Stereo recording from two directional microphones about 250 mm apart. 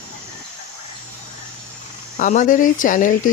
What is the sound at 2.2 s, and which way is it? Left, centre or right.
Speech, left.